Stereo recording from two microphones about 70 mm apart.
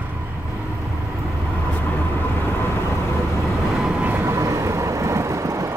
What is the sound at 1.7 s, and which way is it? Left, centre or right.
Vehicle, left.